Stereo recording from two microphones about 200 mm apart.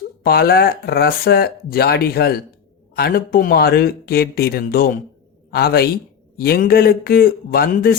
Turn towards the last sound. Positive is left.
turn(degrees=50)  # may be behind; listen again after turning